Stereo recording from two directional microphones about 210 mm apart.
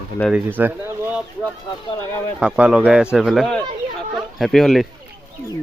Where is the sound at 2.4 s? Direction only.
5° right (ahead or behind).